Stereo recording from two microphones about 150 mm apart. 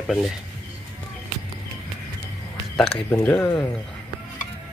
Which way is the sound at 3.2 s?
5° left (ahead or behind).